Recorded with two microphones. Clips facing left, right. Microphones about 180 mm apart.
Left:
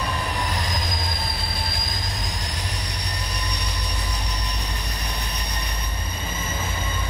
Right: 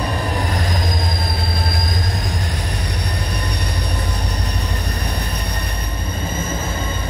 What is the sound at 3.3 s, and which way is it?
Train, 55° right (ahead or behind).